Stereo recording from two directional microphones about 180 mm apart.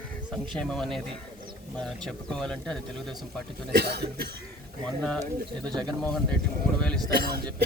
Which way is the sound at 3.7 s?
60° right (ahead or behind).